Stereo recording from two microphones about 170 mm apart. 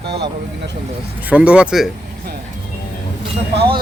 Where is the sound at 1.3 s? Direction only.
10° right (ahead or behind).